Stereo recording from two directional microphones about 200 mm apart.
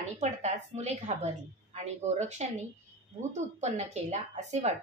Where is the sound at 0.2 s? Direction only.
35° right (ahead or behind).